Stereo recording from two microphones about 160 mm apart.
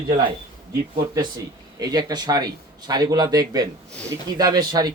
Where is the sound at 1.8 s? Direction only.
25° right (ahead or behind).